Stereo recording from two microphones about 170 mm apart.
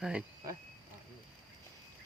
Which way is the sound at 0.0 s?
5° right (ahead or behind).